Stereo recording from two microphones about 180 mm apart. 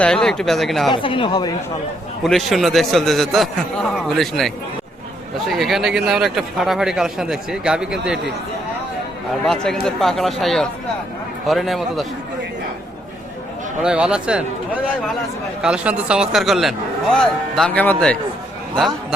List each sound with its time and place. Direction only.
0.0 s speech: 5° left (ahead or behind)
0.9 s speech: 30° left (ahead or behind)
2.2 s speech: centre (ahead or behind)
9.5 s speech: centre (ahead or behind)
13.8 s speech: 5° right (ahead or behind)